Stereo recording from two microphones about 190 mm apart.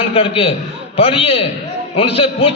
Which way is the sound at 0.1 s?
30° left (ahead or behind).